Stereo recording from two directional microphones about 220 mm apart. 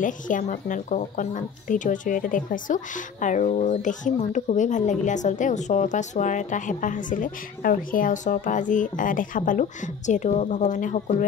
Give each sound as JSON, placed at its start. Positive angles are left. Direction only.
{"t": 0.0, "sound": "speech", "side_deg": 35}